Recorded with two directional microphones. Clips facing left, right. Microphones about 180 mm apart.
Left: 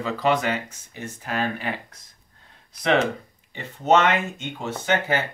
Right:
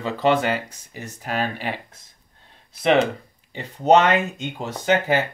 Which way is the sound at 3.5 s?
40° right (ahead or behind).